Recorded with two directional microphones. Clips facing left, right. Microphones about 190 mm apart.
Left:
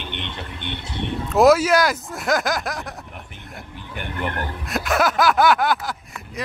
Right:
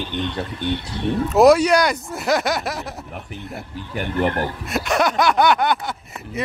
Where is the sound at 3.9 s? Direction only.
40° right (ahead or behind).